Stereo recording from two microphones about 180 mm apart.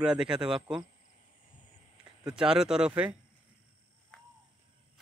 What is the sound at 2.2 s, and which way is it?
Speech, 5° right (ahead or behind).